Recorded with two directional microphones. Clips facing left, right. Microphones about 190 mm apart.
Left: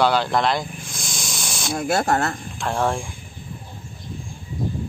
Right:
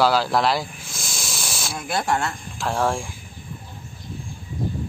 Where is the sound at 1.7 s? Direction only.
45° left (ahead or behind).